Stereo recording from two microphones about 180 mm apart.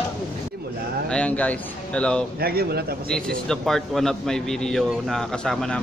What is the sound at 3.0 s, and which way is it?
A man's voice, 5° left (ahead or behind).